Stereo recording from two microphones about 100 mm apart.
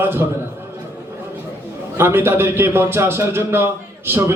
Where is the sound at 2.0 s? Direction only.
25° right (ahead or behind).